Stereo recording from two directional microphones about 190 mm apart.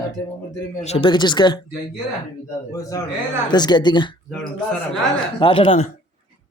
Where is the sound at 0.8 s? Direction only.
35° left (ahead or behind).